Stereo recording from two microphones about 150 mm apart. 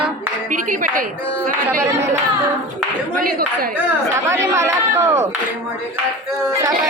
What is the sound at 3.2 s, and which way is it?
Speech, 75° right (ahead or behind).